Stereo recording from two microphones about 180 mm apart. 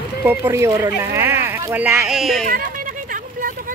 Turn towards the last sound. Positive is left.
turn(degrees=-50)  # may be behind; listen again after turning